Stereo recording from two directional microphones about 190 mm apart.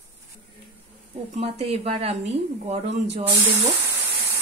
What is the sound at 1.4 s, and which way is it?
Speech, 35° right (ahead or behind).